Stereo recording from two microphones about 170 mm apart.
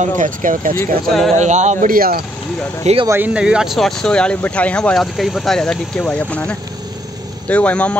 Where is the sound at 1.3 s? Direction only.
45° right (ahead or behind); by 2.3 s 60° right (ahead or behind).